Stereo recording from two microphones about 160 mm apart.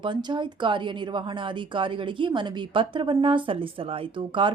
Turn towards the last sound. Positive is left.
turn(degrees=-35)  # may be behind; listen again after turning